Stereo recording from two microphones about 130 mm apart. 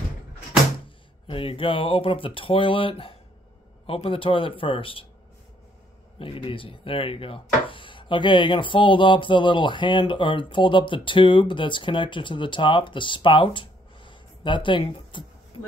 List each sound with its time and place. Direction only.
0.8 s speech: 45° left (ahead or behind)
6.1 s speech: 45° left (ahead or behind)